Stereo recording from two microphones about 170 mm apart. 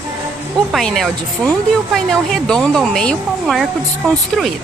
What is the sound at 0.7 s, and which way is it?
Speech, centre (ahead or behind).